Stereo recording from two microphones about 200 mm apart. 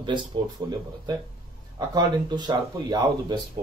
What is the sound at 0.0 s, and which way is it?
A man's voice, 25° right (ahead or behind).